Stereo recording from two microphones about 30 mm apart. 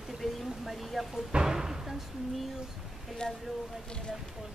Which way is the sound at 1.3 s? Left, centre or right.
Centre.